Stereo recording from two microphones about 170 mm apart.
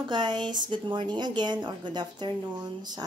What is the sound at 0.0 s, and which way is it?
A woman's voice, 25° right (ahead or behind).